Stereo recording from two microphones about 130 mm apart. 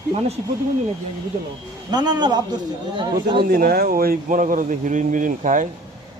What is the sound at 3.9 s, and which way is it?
Speech, 90° right.